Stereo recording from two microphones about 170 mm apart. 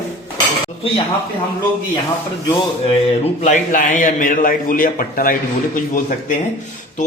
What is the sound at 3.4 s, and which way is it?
A man's voice, 45° left (ahead or behind).